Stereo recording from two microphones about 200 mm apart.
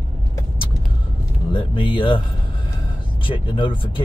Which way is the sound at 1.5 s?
25° left (ahead or behind).